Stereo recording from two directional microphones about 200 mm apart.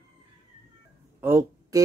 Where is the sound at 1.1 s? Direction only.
10° right (ahead or behind).